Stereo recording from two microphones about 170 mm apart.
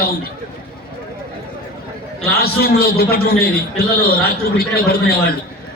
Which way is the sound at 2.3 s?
65° left (ahead or behind).